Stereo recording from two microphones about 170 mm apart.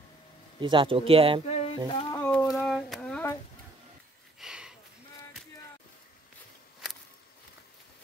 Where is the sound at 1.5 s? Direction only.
35° left (ahead or behind).